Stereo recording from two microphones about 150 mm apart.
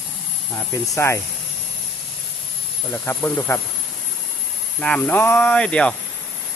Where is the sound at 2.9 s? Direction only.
15° left (ahead or behind).